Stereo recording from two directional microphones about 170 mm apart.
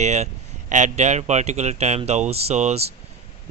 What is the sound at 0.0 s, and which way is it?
Speech, 40° right (ahead or behind).